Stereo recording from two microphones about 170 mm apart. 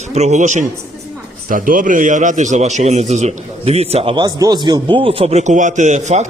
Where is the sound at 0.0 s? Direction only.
40° right (ahead or behind).